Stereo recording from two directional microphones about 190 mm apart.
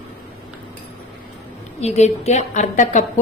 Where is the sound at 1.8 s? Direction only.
35° left (ahead or behind).